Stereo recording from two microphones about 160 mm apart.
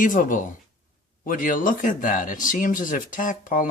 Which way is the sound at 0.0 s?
55° left (ahead or behind).